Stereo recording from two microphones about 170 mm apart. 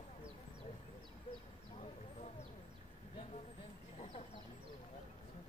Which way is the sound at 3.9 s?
35° left (ahead or behind).